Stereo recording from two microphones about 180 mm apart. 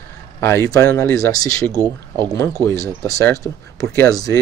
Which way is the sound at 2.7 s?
15° left (ahead or behind).